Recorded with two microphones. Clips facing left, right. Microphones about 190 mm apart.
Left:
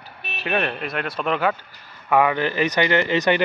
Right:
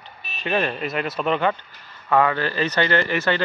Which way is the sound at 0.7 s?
Centre (ahead or behind).